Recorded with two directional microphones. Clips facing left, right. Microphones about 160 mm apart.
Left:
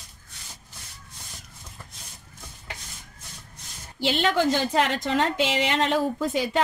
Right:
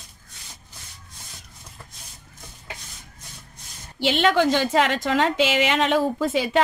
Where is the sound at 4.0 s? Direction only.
90° right.